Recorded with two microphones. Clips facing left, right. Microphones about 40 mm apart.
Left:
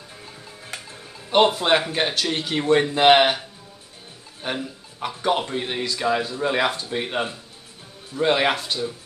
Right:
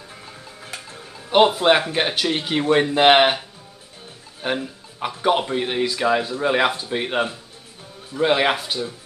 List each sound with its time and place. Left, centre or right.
1.3 s speech: centre